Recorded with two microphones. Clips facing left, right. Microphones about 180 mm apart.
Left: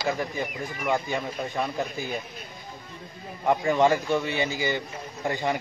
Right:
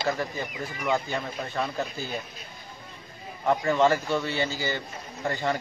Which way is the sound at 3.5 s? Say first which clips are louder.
Left 1 dB; 15° left (ahead or behind).